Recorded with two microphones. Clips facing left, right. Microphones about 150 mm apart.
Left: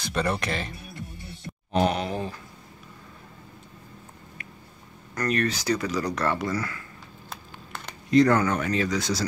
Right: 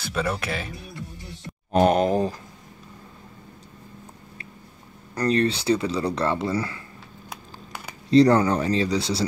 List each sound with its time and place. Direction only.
0.0 s speech: 5° right (ahead or behind)
1.7 s speech: 45° right (ahead or behind)
5.1 s speech: 30° right (ahead or behind)
7.2 s a sound: 10° right (ahead or behind)
8.1 s speech: 30° right (ahead or behind)